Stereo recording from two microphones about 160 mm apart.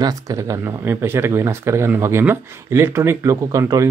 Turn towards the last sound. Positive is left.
turn(degrees=-20)  # may be behind; listen again after turning